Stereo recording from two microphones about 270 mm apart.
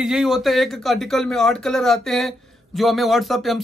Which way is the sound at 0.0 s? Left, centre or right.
Centre.